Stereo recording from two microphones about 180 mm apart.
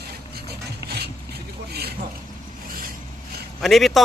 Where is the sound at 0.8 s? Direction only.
65° right (ahead or behind).